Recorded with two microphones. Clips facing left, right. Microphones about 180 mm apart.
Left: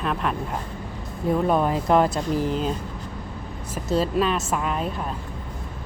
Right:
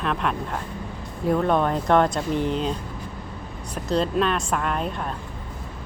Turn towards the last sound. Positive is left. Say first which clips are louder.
# even
turn(degrees=0)  # may be behind; listen again after turning